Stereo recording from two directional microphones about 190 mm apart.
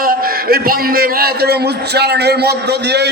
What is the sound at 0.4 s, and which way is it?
A man's voice, 50° right (ahead or behind).